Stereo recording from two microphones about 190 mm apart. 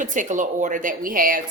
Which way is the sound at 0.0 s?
40° right (ahead or behind).